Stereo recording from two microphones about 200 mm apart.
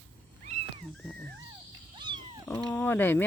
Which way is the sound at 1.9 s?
25° right (ahead or behind).